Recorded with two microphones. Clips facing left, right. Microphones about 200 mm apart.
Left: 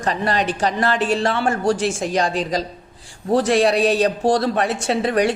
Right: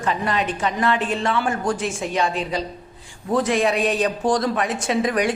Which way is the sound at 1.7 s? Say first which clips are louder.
Left 5 dB; 85° left.